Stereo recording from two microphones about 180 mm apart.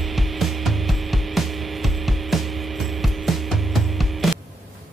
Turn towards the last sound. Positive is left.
turn(degrees=0)  # may be behind; listen again after turning